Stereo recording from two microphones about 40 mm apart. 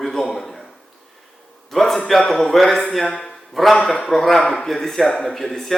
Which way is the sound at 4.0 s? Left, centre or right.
Centre.